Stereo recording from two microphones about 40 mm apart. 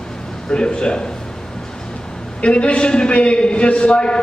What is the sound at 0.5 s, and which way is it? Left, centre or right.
Speech, left.